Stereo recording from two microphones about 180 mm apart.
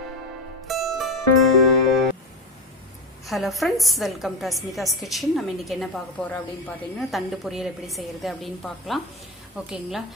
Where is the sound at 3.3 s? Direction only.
Centre (ahead or behind).